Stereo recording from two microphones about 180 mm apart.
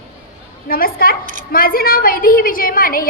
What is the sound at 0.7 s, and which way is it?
A woman's voice, 55° left (ahead or behind).